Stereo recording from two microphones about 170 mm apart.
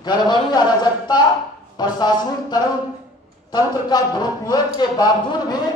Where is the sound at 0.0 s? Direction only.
25° left (ahead or behind).